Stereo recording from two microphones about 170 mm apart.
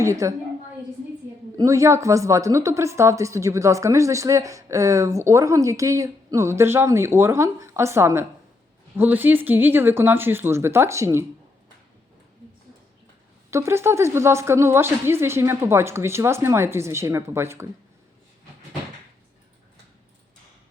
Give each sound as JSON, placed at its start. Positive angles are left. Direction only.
{"t": 0.0, "sound": "a woman's voice", "side_deg": -20}
{"t": 1.5, "sound": "a woman's voice", "side_deg": -20}
{"t": 13.5, "sound": "a woman's voice", "side_deg": -15}